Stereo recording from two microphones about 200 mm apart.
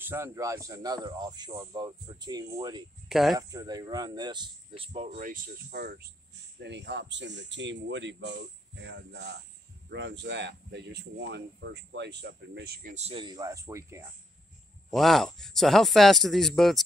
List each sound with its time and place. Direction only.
0.0 s speech: 10° right (ahead or behind)
3.1 s speech: centre (ahead or behind)
3.3 s speech: 20° right (ahead or behind); by 6.0 s 50° right (ahead or behind)
6.6 s speech: 60° right (ahead or behind)
12.9 s speech: 30° right (ahead or behind); by 14.0 s 15° right (ahead or behind)
14.9 s speech: centre (ahead or behind)